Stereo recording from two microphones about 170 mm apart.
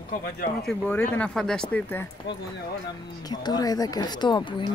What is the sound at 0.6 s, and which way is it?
Speech, 5° left (ahead or behind).